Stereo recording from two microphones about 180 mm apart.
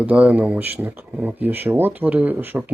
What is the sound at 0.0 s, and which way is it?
Speech, 5° right (ahead or behind).